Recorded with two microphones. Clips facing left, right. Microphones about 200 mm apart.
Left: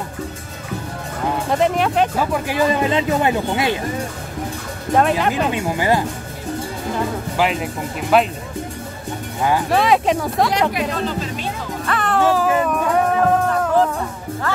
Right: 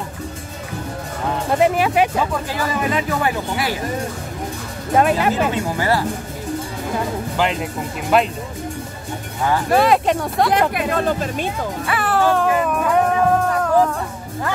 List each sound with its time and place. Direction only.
1.5 s speech: 5° right (ahead or behind)
2.3 s speech: 15° left (ahead or behind)
4.9 s speech: 5° right (ahead or behind)
5.5 s speech: 15° left (ahead or behind)
7.3 s speech: 5° left (ahead or behind)
9.7 s speech: centre (ahead or behind)
10.7 s speech: 55° right (ahead or behind)
11.8 s music: 5° right (ahead or behind)